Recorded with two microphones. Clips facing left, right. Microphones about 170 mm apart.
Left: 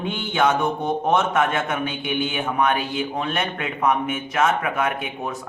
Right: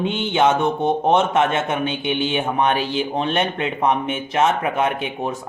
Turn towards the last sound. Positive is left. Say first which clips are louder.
# right 3 dB
turn(degrees=-30)  # may be behind; listen again after turning